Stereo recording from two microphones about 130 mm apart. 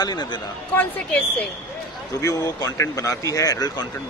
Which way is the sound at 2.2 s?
25° left (ahead or behind).